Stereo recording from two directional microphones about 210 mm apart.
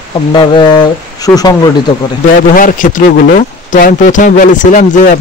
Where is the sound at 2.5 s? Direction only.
40° left (ahead or behind).